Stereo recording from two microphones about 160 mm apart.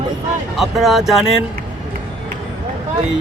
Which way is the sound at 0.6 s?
Centre (ahead or behind).